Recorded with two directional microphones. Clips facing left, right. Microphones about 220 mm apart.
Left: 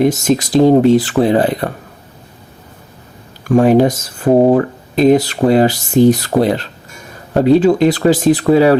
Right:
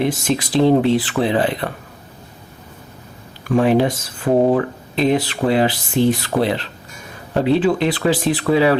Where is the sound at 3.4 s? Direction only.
45° left (ahead or behind).